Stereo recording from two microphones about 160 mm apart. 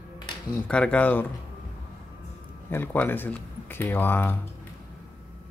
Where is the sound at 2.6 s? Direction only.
10° left (ahead or behind).